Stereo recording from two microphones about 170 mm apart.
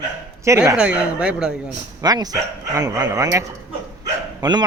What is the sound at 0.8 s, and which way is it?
Speech, 5° right (ahead or behind).